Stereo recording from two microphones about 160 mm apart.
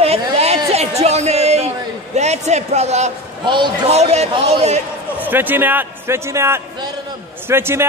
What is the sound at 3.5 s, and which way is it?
Speech, 30° right (ahead or behind).